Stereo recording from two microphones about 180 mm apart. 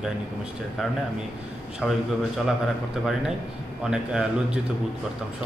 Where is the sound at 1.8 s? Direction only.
Centre (ahead or behind).